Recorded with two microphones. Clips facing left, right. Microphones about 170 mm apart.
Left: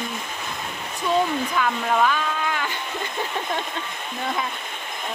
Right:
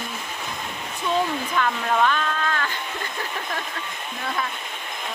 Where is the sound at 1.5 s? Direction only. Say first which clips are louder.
Left 1 dB; 5° left (ahead or behind).